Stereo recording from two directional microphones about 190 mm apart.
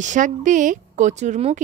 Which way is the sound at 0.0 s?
40° right (ahead or behind).